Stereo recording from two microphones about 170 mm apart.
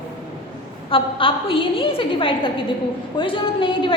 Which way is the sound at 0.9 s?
30° left (ahead or behind).